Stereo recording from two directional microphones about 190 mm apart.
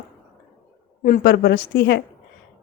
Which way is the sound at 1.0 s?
50° left (ahead or behind).